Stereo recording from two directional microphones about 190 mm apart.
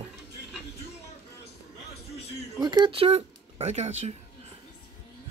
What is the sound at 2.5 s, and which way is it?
Speech, 20° right (ahead or behind).